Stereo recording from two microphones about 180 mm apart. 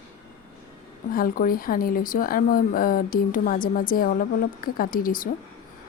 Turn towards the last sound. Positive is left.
turn(degrees=50)  # may be behind; listen again after turning